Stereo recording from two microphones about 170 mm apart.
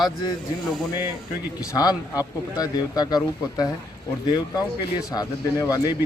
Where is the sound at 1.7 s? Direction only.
20° left (ahead or behind).